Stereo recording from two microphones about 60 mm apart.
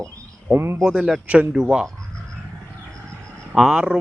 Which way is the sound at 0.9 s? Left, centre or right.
Centre.